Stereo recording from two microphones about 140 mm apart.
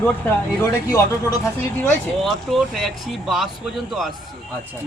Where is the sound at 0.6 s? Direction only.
20° left (ahead or behind).